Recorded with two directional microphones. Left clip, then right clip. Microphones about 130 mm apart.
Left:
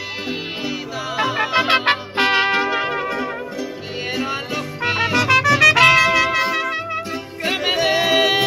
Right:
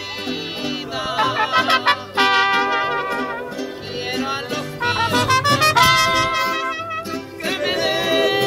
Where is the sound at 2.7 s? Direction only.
15° left (ahead or behind).